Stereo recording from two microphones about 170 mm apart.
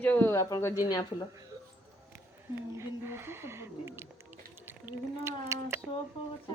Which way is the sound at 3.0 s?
15° right (ahead or behind).